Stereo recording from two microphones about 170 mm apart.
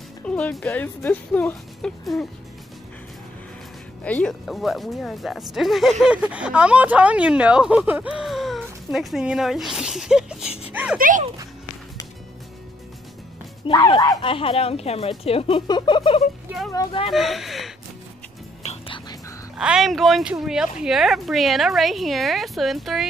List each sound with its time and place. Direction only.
0.2 s speech: 5° left (ahead or behind)
4.0 s speech: 5° left (ahead or behind)
10.7 s a sound: 5° right (ahead or behind)
11.0 s speech: 50° right (ahead or behind)
13.7 s speech: 25° left (ahead or behind)
17.1 s speech: centre (ahead or behind)
18.6 s whispering: 40° left (ahead or behind)
19.5 s speech: 5° right (ahead or behind)